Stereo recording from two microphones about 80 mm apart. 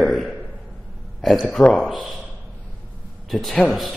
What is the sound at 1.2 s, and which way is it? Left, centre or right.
Speech, centre.